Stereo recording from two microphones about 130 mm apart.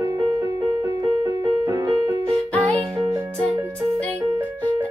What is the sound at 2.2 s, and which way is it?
Music, 10° left (ahead or behind).